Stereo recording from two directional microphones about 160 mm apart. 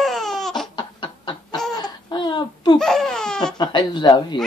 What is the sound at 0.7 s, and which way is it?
Chicken, 30° left (ahead or behind).